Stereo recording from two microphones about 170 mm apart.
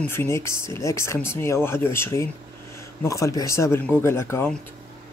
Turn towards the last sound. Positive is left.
turn(degrees=15)  # may be behind; listen again after turning